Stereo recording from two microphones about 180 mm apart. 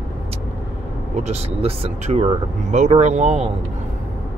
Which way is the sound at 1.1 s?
35° right (ahead or behind).